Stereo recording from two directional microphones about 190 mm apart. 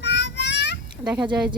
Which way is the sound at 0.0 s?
65° left (ahead or behind).